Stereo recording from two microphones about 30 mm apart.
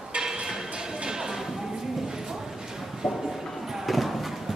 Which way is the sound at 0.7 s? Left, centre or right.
Right.